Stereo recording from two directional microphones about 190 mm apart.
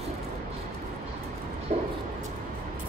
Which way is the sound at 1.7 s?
30° right (ahead or behind).